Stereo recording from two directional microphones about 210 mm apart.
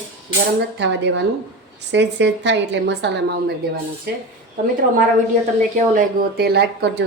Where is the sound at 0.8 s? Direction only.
60° right (ahead or behind).